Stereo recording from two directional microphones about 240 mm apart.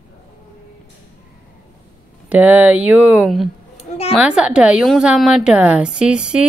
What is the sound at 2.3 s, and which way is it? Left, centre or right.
A woman's voice, centre.